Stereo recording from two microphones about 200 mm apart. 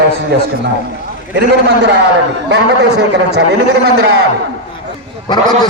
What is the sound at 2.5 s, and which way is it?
Speech, 60° right (ahead or behind).